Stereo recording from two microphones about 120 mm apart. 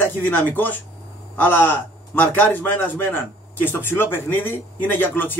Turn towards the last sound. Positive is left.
turn(degrees=15)  # may be behind; listen again after turning